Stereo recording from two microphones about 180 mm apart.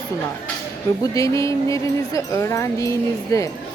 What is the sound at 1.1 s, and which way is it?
A woman's voice, 20° left (ahead or behind).